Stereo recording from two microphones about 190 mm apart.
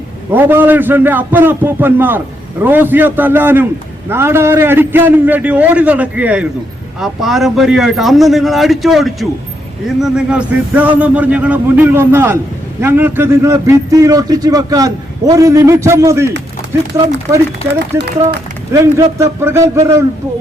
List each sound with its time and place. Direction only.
0.3 s a man's voice: 10° right (ahead or behind)
17.9 s speech: 65° right (ahead or behind)
18.7 s speech: 15° right (ahead or behind)